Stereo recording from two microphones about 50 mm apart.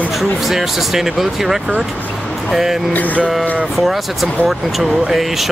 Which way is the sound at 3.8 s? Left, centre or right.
Centre.